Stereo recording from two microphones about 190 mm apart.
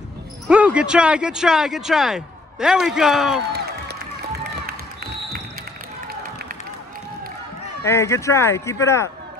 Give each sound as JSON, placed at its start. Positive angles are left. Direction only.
{"t": 0.5, "sound": "speech", "side_deg": -5}
{"t": 4.6, "sound": "music", "side_deg": -55}
{"t": 7.8, "sound": "speech", "side_deg": 15}